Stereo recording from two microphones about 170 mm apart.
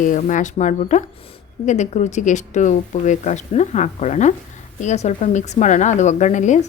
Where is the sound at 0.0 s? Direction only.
50° left (ahead or behind).